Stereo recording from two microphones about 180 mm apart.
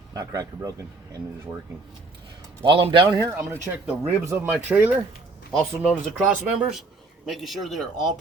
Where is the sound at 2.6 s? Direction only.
30° right (ahead or behind).